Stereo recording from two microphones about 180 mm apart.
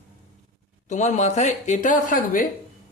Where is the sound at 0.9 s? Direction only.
40° left (ahead or behind).